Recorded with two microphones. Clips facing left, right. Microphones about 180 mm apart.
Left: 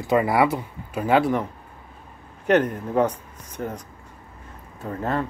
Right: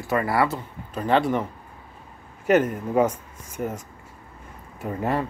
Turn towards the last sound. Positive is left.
turn(degrees=-10)  # may be behind; listen again after turning